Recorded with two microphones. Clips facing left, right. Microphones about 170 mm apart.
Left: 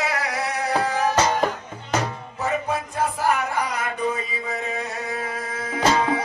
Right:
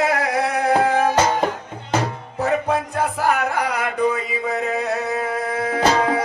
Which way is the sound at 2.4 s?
65° right (ahead or behind).